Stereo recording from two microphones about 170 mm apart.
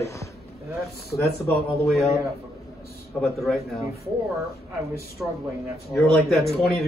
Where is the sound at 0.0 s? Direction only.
15° left (ahead or behind).